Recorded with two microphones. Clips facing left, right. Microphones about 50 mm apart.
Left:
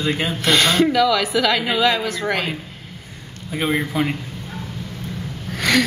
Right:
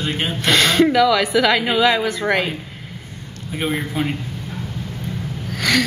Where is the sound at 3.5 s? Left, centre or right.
Left.